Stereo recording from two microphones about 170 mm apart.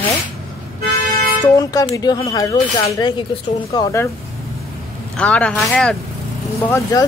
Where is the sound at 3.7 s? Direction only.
15° left (ahead or behind).